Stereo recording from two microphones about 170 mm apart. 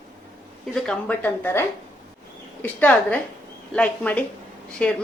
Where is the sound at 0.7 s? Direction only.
Centre (ahead or behind).